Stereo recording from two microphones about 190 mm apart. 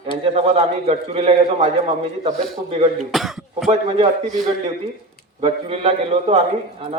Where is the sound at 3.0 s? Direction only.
Centre (ahead or behind).